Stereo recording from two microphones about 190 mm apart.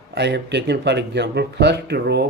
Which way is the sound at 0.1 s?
65° right (ahead or behind).